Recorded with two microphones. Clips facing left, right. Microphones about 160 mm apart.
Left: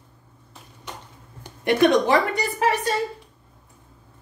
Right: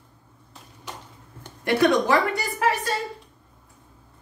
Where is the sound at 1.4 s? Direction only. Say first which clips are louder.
Left 2 dB; 20° left (ahead or behind).